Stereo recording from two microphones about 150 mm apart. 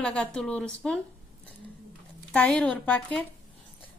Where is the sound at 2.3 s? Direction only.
10° left (ahead or behind).